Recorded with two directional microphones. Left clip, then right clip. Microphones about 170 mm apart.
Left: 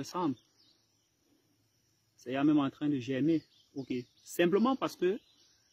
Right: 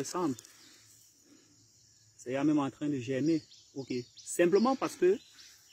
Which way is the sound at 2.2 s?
75° left (ahead or behind).